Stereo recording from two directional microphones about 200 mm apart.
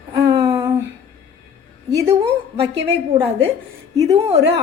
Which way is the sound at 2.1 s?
30° right (ahead or behind).